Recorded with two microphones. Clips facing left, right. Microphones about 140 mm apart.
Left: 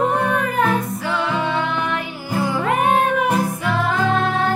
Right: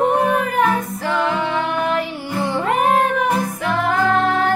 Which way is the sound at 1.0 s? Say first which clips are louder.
Right 2 dB; 45° right (ahead or behind).